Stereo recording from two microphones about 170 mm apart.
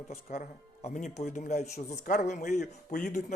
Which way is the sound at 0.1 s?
45° left (ahead or behind).